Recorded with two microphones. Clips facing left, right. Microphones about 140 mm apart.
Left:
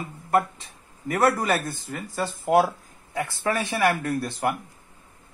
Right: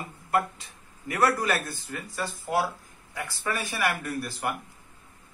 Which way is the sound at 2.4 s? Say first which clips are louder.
Left 8 dB; 55° left (ahead or behind).